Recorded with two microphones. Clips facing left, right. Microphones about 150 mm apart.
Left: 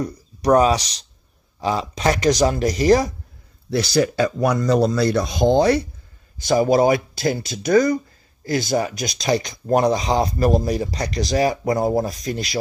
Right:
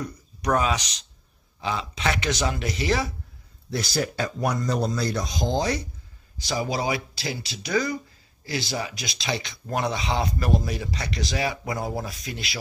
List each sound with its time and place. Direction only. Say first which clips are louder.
0.0 s speech: left 7 dB; 35° left (ahead or behind)
3.7 s speech: left 8 dB; 85° left; by 12.5 s 40° left (ahead or behind)